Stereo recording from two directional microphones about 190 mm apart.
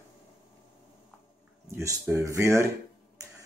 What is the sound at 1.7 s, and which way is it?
Speech, 15° right (ahead or behind).